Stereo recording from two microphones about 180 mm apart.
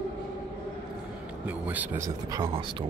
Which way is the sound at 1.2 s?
10° right (ahead or behind).